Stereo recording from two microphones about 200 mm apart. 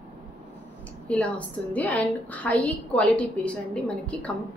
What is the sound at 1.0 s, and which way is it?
A woman's voice, 5° left (ahead or behind).